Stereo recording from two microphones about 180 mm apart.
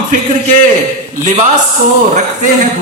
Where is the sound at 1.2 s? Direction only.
45° right (ahead or behind).